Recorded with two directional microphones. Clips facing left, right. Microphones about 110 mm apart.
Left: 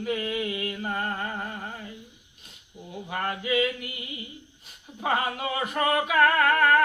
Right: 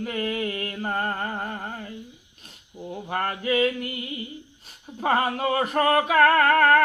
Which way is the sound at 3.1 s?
45° right (ahead or behind).